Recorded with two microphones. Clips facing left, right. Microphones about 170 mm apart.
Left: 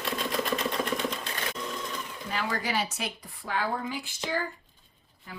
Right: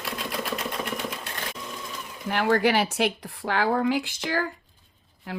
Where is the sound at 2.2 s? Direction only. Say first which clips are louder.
Right 10 dB; 70° right (ahead or behind).